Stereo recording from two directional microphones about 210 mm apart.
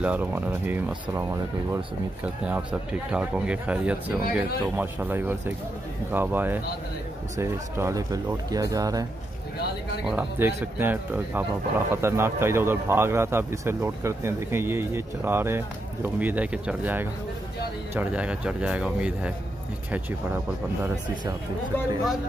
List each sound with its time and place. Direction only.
0.0 s speech: 5° right (ahead or behind)
10.0 s speech: 10° right (ahead or behind)
20.8 s speech: 15° right (ahead or behind)